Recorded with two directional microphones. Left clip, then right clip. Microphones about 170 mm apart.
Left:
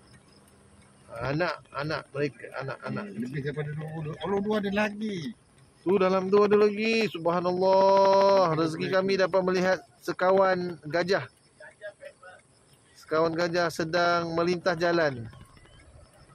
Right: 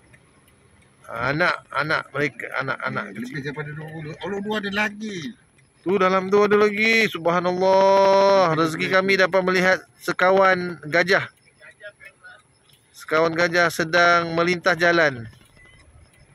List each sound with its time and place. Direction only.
1.1 s speech: 10° right (ahead or behind)
4.5 s a man's voice: 10° left (ahead or behind)
5.9 s speech: 10° right (ahead or behind)
6.3 s mantra: 10° right (ahead or behind)
12.9 s a sound: 20° right (ahead or behind)
13.4 s mantra: 20° right (ahead or behind)